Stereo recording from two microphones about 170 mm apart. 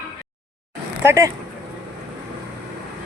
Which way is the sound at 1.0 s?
15° right (ahead or behind).